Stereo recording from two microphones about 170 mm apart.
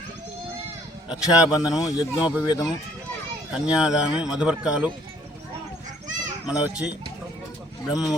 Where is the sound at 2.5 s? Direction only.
25° left (ahead or behind).